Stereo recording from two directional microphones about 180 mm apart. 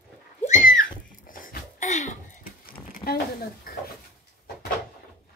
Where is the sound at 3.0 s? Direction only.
55° left (ahead or behind).